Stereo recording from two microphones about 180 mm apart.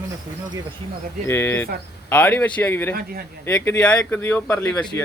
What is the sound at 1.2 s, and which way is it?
Speech, 15° left (ahead or behind).